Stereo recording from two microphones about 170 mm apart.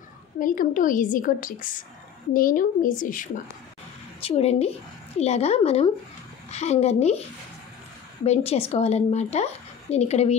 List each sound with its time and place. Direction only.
0.4 s a woman's voice: 55° left (ahead or behind)
4.2 s a woman's voice: 35° left (ahead or behind)
8.3 s a woman's voice: 35° left (ahead or behind)